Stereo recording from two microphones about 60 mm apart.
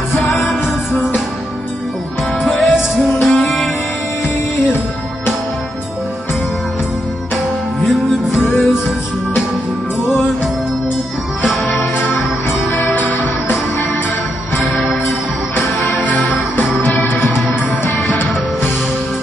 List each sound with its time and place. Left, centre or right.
0.3 s music: centre
2.4 s music: centre
7.8 s music: centre
10.0 s music: centre
11.7 s music: left
14.6 s music: centre
16.9 s music: left